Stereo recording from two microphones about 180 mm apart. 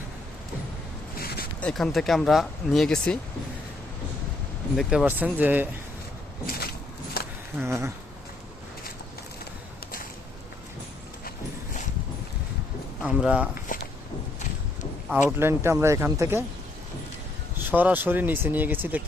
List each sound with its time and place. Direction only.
1.2 s a sound: 60° left (ahead or behind)
1.6 s speech: centre (ahead or behind)
4.8 s speech: 5° right (ahead or behind)
7.2 s a sound: 60° left (ahead or behind)
7.5 s speech: 15° right (ahead or behind)
13.0 s speech: 5° right (ahead or behind)
13.7 s a sound: 50° left (ahead or behind)
15.4 s speech: 15° right (ahead or behind)
17.7 s speech: 10° right (ahead or behind)